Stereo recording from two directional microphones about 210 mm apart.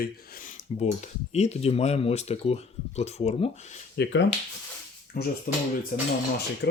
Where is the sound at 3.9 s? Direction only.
55° left (ahead or behind); by 6.1 s 40° left (ahead or behind).